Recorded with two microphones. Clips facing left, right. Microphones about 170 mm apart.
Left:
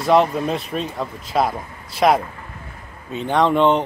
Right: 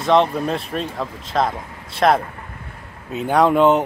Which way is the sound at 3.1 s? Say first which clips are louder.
Right 2 dB; 5° right (ahead or behind).